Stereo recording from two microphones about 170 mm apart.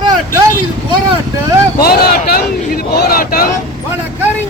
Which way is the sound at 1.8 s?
65° left (ahead or behind).